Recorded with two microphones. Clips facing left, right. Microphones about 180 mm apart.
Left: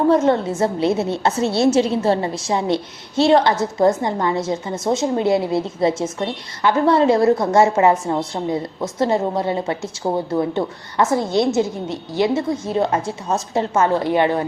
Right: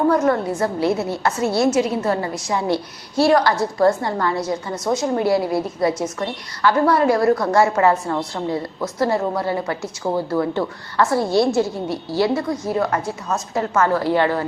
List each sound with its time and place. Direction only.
0.1 s a woman's voice: 25° left (ahead or behind)